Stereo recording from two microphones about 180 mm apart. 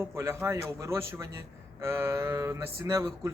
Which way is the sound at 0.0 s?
15° right (ahead or behind).